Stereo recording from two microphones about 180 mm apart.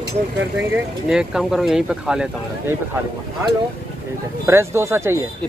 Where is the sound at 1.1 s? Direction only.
5° right (ahead or behind).